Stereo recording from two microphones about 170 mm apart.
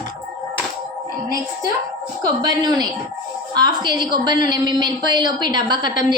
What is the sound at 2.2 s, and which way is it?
A woman's voice, 25° right (ahead or behind).